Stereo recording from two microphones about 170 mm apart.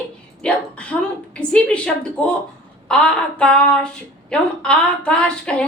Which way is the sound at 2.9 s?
5° left (ahead or behind).